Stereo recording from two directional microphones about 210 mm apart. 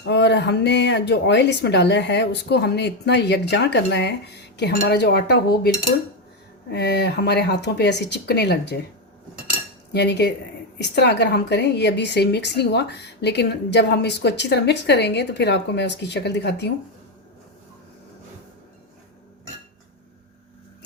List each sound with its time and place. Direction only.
0.0 s a woman's voice: 55° left (ahead or behind)
9.9 s a woman's voice: 50° left (ahead or behind)